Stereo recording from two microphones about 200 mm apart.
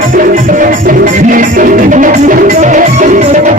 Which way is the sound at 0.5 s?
40° right (ahead or behind).